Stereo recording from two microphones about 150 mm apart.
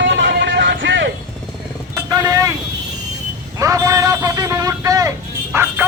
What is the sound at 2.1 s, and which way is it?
Vehicle, 25° right (ahead or behind).